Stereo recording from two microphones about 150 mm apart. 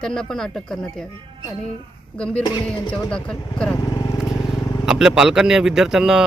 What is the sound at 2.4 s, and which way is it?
Speech, 25° left (ahead or behind).